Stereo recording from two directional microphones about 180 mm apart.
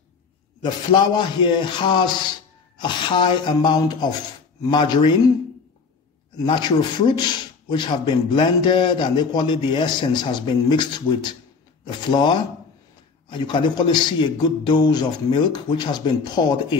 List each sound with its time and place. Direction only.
0.6 s a man's voice: 25° left (ahead or behind)
6.3 s a man's voice: 25° left (ahead or behind)